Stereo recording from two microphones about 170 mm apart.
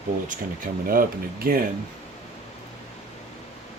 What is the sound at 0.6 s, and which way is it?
Speech, 55° right (ahead or behind).